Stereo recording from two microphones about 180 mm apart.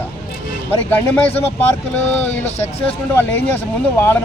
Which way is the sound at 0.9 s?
10° left (ahead or behind).